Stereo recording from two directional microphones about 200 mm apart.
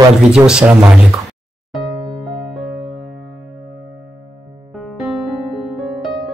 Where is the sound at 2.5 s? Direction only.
Centre (ahead or behind).